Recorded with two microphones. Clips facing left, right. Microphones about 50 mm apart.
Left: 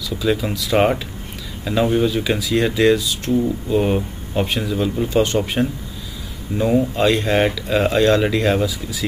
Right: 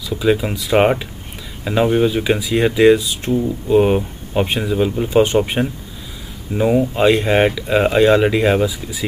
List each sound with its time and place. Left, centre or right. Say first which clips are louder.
0.1 s speech: right 4 dB; centre